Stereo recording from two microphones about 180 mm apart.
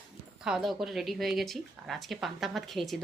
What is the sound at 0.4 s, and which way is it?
A woman's voice, centre (ahead or behind).